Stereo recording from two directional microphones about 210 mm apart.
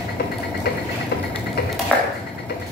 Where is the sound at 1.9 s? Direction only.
5° left (ahead or behind).